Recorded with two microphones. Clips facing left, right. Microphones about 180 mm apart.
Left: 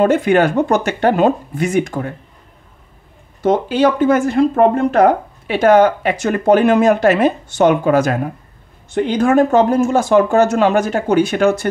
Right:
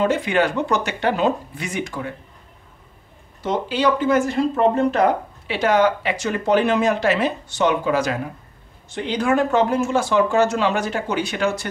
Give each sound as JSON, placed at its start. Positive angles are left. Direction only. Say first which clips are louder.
{"t": 0.0, "sound": "speech", "louder": "left 6 dB", "side_deg": 50}
{"t": 3.4, "sound": "speech", "louder": "left 6 dB", "side_deg": 50}